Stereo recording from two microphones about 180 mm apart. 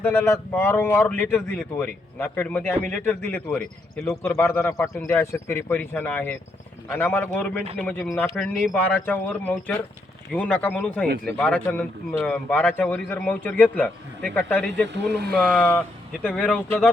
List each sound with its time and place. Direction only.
0.0 s speech: 15° left (ahead or behind)
14.9 s speech: 70° right (ahead or behind)
15.4 s speech: 10° left (ahead or behind)